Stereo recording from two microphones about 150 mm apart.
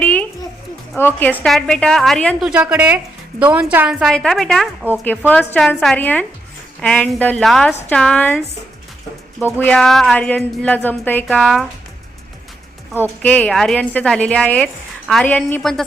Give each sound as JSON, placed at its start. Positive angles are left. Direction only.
{"t": 0.0, "sound": "a sound", "side_deg": 10}
{"t": 0.9, "sound": "a woman's voice", "side_deg": 15}
{"t": 2.5, "sound": "a woman's voice", "side_deg": -10}
{"t": 9.6, "sound": "a woman's voice", "side_deg": 5}
{"t": 13.0, "sound": "a woman's voice", "side_deg": 10}